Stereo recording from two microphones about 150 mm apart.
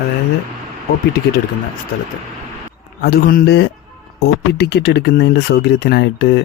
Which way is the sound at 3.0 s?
80° left.